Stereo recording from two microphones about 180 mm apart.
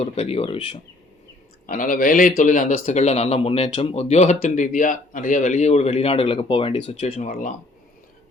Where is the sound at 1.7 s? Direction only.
50° left (ahead or behind).